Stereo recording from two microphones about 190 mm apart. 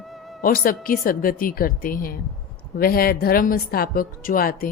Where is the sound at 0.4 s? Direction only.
50° left (ahead or behind).